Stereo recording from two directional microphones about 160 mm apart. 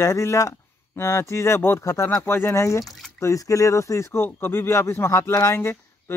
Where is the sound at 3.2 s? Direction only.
20° left (ahead or behind).